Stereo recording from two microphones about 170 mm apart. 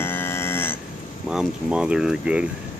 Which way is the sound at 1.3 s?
5° right (ahead or behind).